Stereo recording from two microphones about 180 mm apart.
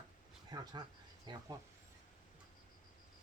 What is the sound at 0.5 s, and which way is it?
A man's voice, 20° right (ahead or behind).